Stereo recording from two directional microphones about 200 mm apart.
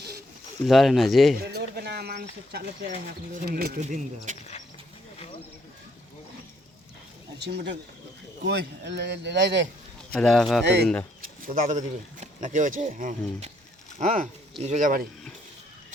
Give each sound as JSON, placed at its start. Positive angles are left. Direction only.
{"t": 0.6, "sound": "speech", "side_deg": 0}
{"t": 1.4, "sound": "a sound", "side_deg": -50}
{"t": 2.5, "sound": "speech", "side_deg": -55}
{"t": 7.3, "sound": "speech", "side_deg": -55}
{"t": 10.1, "sound": "speech", "side_deg": 5}
{"t": 10.6, "sound": "speech", "side_deg": -60}
{"t": 11.2, "sound": "speech", "side_deg": -40}